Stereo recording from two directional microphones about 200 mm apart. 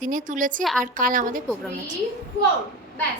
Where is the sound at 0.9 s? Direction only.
40° right (ahead or behind).